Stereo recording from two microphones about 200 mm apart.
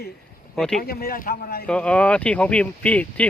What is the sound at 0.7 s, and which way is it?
Speech, 45° left (ahead or behind).